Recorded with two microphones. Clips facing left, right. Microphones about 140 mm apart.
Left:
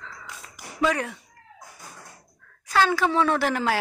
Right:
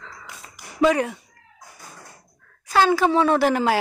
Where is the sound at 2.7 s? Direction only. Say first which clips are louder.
Right 4 dB; 15° right (ahead or behind).